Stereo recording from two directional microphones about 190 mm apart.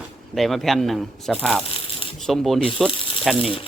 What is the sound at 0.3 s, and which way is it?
Speech, centre (ahead or behind).